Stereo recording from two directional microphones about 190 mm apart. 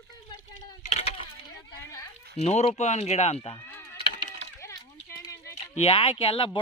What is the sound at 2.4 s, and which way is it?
Speech, 35° left (ahead or behind).